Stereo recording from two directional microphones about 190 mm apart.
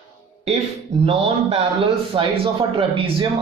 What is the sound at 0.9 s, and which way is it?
Speech, 35° right (ahead or behind).